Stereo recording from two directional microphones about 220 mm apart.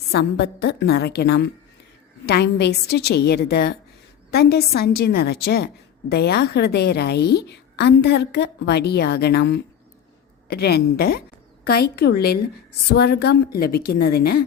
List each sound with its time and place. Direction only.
0.1 s a woman's voice: 50° left (ahead or behind)